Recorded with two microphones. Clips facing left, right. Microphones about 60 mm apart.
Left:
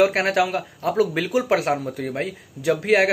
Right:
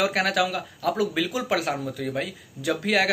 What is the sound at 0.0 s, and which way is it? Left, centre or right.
Speech, left.